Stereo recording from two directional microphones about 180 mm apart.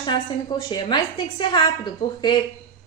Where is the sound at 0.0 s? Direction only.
25° left (ahead or behind).